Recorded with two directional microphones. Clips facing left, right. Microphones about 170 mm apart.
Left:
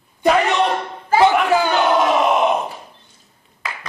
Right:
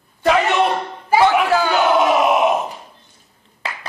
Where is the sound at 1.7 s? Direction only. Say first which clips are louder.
Right 1 dB; 5° right (ahead or behind).